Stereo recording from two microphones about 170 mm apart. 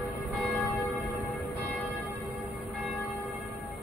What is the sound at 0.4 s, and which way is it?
Church bell, 10° left (ahead or behind).